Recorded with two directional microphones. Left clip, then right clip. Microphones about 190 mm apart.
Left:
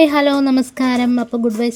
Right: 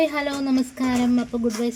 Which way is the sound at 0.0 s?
50° left (ahead or behind).